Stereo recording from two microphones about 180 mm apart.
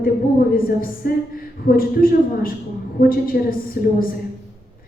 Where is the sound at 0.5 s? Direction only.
55° left (ahead or behind).